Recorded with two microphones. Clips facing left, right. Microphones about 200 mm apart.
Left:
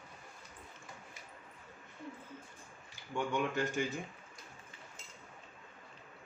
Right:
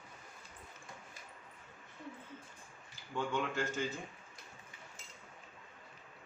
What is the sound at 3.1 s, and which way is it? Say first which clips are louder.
Speech: left 2 dB; 15° left (ahead or behind).